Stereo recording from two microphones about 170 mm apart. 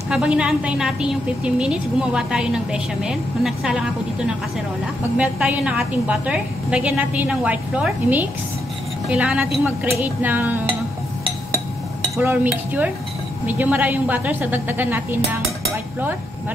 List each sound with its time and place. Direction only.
0.1 s a woman's voice: 5° right (ahead or behind)
5.1 s a woman's voice: 10° right (ahead or behind)
12.2 s a woman's voice: 10° right (ahead or behind)